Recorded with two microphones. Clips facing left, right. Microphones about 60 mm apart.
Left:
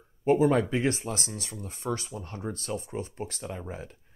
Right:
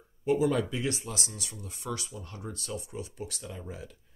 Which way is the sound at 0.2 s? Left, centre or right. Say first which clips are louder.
Left 4 dB; left.